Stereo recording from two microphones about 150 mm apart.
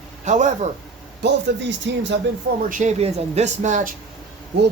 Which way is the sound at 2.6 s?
60° right (ahead or behind).